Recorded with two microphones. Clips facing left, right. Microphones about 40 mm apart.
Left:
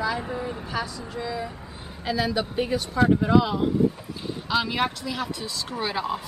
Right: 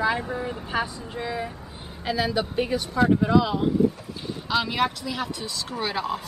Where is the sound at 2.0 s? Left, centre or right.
Centre.